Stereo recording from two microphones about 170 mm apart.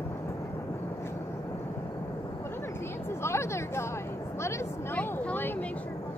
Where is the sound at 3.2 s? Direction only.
15° left (ahead or behind).